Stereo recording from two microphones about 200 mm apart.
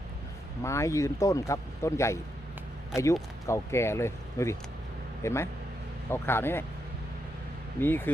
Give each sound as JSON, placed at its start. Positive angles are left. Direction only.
{"t": 0.6, "sound": "speech", "side_deg": 15}
{"t": 7.8, "sound": "speech", "side_deg": 10}